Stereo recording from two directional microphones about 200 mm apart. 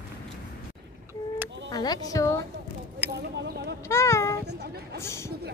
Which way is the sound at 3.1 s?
60° right (ahead or behind).